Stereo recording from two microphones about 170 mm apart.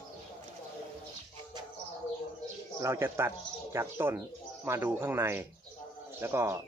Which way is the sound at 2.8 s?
15° right (ahead or behind).